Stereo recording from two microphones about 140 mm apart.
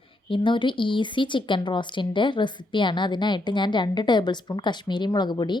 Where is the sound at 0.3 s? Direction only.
35° left (ahead or behind).